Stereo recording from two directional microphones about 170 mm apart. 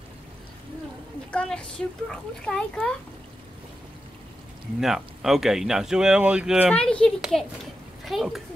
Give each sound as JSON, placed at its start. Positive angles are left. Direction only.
{"t": 1.3, "sound": "speech", "side_deg": 5}
{"t": 4.7, "sound": "speech", "side_deg": 0}
{"t": 6.7, "sound": "speech", "side_deg": 5}